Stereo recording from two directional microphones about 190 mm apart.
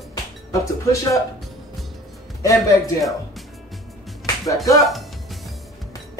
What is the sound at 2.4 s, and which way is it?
Speech, 15° left (ahead or behind).